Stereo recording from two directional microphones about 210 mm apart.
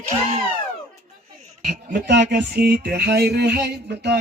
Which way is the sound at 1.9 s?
55° right (ahead or behind).